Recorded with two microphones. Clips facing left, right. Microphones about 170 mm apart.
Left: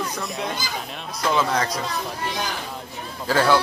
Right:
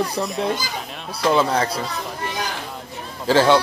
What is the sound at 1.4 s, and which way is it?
Speech, 30° right (ahead or behind).